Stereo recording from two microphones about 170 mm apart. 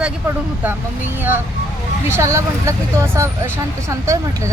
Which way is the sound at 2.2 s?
15° right (ahead or behind).